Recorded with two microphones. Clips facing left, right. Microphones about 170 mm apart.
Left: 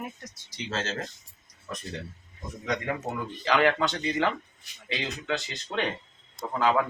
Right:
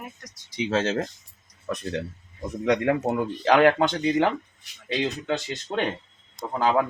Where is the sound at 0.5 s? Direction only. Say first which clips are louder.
Right 9 dB; 60° right (ahead or behind).